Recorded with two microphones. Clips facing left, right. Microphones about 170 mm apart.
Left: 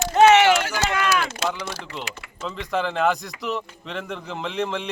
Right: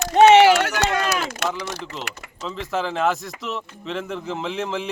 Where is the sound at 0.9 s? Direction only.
40° right (ahead or behind).